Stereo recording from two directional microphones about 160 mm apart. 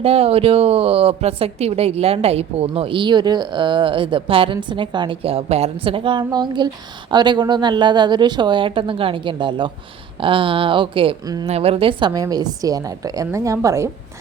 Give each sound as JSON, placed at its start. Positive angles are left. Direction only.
{"t": 0.0, "sound": "a woman's voice", "side_deg": -40}